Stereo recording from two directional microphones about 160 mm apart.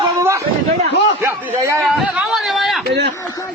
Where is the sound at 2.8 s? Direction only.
90° right.